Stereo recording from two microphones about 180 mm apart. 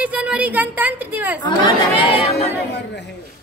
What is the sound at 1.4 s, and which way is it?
Chatter, 25° left (ahead or behind).